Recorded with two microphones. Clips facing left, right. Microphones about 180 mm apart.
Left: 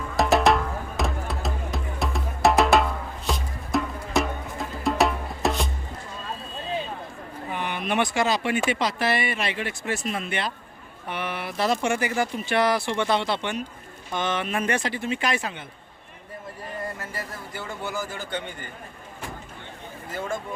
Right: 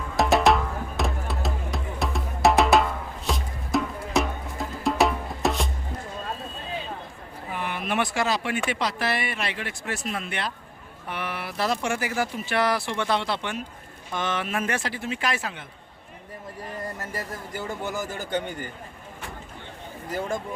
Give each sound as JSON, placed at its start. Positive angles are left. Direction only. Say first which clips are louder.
{"t": 0.2, "sound": "music", "louder": "even", "side_deg": 0}
{"t": 7.5, "sound": "speech", "louder": "left 1 dB", "side_deg": 0}
{"t": 17.0, "sound": "speech", "louder": "right 2 dB", "side_deg": -40}
{"t": 20.1, "sound": "speech", "louder": "right 3 dB", "side_deg": -40}